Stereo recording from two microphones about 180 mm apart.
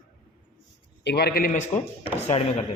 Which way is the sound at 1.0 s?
65° left (ahead or behind).